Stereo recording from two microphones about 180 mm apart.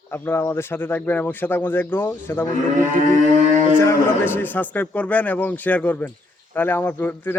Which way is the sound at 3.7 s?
10° left (ahead or behind).